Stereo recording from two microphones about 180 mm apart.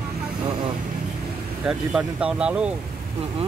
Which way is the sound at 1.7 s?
5° right (ahead or behind).